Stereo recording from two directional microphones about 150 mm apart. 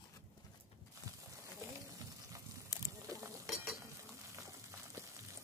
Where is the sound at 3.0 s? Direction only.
20° right (ahead or behind).